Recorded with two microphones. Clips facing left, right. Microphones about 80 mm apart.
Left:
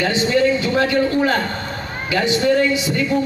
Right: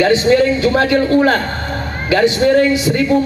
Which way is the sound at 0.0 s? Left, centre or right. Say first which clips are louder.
Right 5 dB; right.